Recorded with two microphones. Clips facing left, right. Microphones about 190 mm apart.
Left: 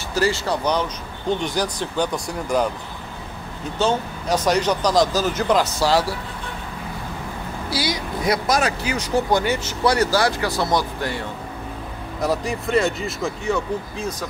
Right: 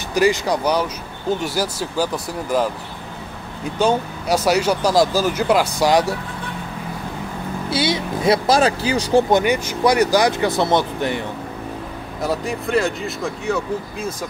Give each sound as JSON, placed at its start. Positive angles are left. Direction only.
{"t": 0.1, "sound": "speech", "side_deg": -15}
{"t": 3.7, "sound": "speech", "side_deg": -10}
{"t": 7.7, "sound": "speech", "side_deg": -25}
{"t": 9.4, "sound": "speech", "side_deg": -15}
{"t": 12.2, "sound": "speech", "side_deg": 0}